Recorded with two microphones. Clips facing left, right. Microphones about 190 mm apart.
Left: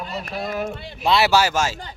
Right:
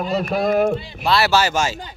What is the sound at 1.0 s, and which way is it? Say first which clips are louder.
Speech: even; 20° left (ahead or behind).